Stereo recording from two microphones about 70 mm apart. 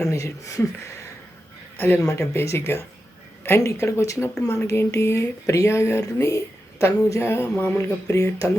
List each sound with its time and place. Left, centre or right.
0.0 s speech: left
2.0 s speech: left
2.3 s a sound: left
3.6 s speech: left
7.2 s a sound: left
8.1 s speech: left